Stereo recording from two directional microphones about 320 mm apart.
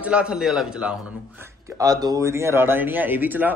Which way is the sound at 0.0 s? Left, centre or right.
Centre.